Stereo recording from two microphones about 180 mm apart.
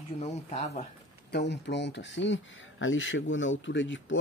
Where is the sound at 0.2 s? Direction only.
40° left (ahead or behind).